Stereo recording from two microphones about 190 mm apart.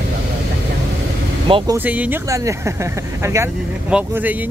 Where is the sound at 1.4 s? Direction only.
25° right (ahead or behind).